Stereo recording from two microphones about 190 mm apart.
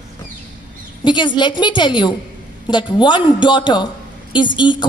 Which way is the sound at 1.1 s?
25° left (ahead or behind).